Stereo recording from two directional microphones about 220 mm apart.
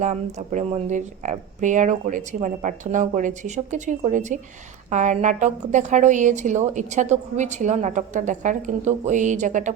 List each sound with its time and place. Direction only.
0.0 s a woman's voice: 30° right (ahead or behind)